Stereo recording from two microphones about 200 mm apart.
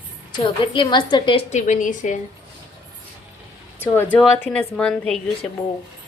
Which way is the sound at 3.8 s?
10° left (ahead or behind).